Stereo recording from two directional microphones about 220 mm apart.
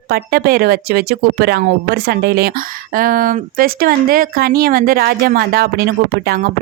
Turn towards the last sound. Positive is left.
turn(degrees=-45)  # may be behind; listen again after turning